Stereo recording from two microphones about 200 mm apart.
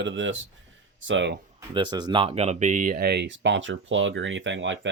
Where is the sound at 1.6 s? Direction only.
20° right (ahead or behind).